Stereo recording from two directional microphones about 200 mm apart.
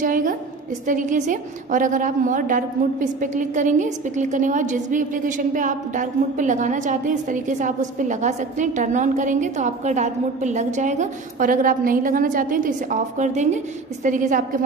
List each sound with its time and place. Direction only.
0.0 s a woman's voice: 40° right (ahead or behind)